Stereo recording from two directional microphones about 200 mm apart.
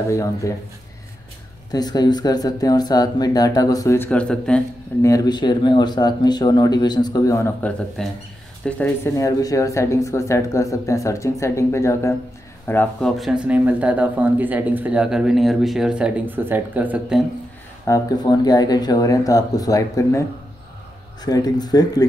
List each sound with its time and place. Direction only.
0.1 s speech: 15° left (ahead or behind)
1.7 s speech: 20° left (ahead or behind)
5.0 s speech: 20° left (ahead or behind)
13.2 s speech: 5° right (ahead or behind)
17.8 s speech: 20° left (ahead or behind)